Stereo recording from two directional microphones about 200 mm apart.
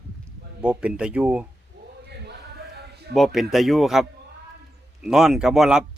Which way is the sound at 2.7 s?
55° right (ahead or behind).